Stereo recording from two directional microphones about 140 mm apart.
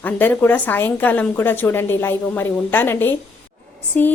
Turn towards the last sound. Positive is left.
turn(degrees=10)  # may be behind; listen again after turning